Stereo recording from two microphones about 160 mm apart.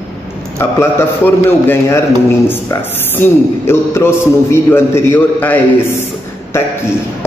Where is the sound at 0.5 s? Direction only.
15° left (ahead or behind).